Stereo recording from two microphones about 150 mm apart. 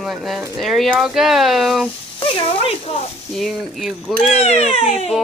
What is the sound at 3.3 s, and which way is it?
Speech, centre (ahead or behind).